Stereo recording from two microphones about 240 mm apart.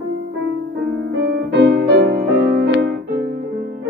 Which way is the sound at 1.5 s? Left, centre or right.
Right.